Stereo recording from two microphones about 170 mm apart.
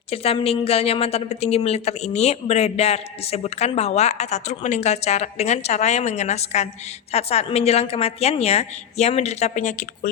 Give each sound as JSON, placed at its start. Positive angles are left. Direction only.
{"t": 0.1, "sound": "a woman's voice", "side_deg": 35}